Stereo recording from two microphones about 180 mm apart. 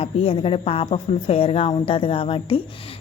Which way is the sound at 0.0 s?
30° left (ahead or behind).